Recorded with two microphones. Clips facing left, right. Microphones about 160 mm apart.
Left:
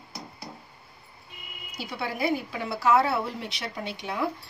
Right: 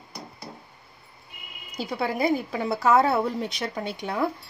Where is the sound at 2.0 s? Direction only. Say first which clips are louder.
Right 3 dB; 40° right (ahead or behind).